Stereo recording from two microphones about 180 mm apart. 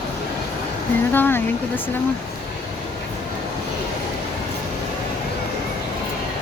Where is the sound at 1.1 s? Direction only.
10° left (ahead or behind).